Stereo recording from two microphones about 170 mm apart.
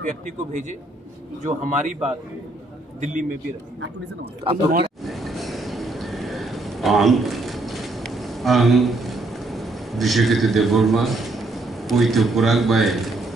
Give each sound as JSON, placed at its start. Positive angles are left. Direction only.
{"t": 0.0, "sound": "a man's voice", "side_deg": -50}
{"t": 3.0, "sound": "a man's voice", "side_deg": -50}
{"t": 5.0, "sound": "a sound", "side_deg": 0}